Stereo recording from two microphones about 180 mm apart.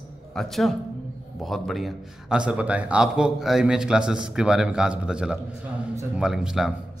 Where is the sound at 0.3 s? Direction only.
Centre (ahead or behind).